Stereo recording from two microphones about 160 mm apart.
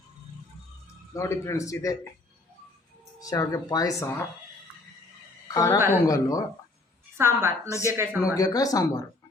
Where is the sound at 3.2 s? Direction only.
20° left (ahead or behind).